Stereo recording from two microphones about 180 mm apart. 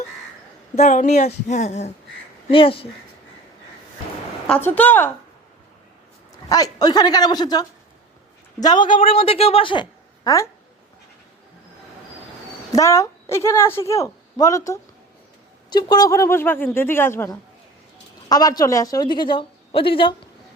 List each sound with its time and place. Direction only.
0.8 s speech: 40° left (ahead or behind)
2.5 s a woman's voice: 30° left (ahead or behind)
4.4 s speech: 10° left (ahead or behind)
6.5 s a woman's voice: 20° left (ahead or behind)
10.2 s speech: 15° left (ahead or behind)
12.7 s a woman's voice: 15° left (ahead or behind)